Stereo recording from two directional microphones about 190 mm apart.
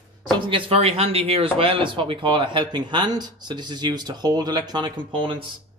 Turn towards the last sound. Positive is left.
turn(degrees=-25)  # may be behind; listen again after turning